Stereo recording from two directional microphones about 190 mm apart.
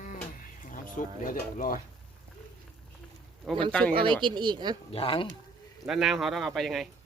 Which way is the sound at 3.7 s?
5° left (ahead or behind).